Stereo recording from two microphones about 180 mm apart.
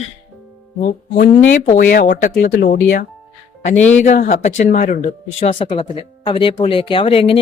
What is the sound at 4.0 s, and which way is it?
Speech, 45° left (ahead or behind).